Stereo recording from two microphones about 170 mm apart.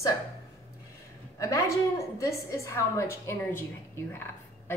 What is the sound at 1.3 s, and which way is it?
A woman's voice, 20° left (ahead or behind).